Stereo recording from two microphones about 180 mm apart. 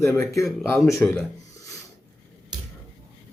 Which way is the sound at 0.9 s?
Centre (ahead or behind).